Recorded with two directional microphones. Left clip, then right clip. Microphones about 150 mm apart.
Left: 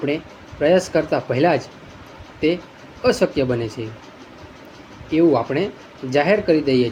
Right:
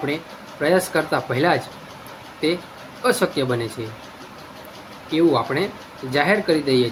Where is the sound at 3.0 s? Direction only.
35° left (ahead or behind).